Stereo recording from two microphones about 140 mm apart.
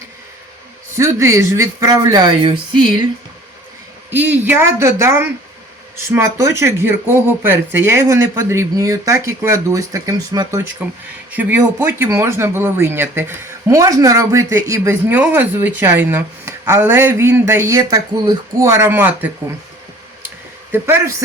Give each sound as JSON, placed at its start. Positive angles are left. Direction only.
{"t": 0.9, "sound": "speech", "side_deg": -20}
{"t": 4.1, "sound": "speech", "side_deg": -10}
{"t": 20.7, "sound": "speech", "side_deg": -15}